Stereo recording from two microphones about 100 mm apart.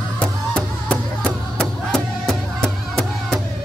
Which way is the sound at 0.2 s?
10° left (ahead or behind).